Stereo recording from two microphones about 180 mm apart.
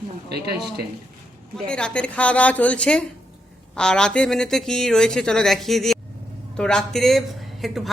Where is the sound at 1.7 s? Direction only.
5° left (ahead or behind).